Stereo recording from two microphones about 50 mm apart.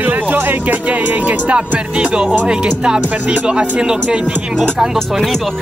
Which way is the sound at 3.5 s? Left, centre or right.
Centre.